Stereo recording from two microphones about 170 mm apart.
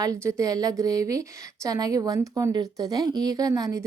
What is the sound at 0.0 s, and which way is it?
A woman's voice, 20° right (ahead or behind).